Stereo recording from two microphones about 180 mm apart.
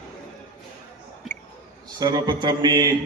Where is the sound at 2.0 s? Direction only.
20° right (ahead or behind).